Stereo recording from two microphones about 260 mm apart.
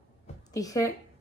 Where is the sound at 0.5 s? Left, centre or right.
Centre.